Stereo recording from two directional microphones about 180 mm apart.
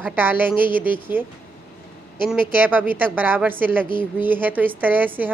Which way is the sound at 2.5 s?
10° right (ahead or behind).